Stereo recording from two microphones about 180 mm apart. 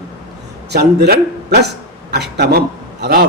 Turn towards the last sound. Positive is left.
turn(degrees=-60)  # may be behind; listen again after turning